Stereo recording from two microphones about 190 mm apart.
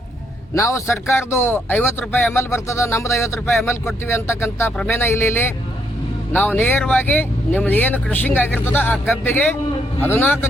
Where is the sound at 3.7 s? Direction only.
15° left (ahead or behind).